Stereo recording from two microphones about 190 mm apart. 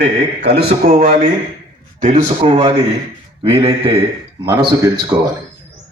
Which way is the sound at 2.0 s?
40° right (ahead or behind).